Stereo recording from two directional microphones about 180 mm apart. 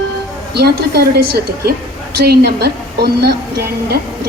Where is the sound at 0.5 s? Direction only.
60° right (ahead or behind).